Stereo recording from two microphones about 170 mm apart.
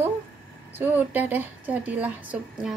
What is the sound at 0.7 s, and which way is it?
A woman's voice, 10° right (ahead or behind).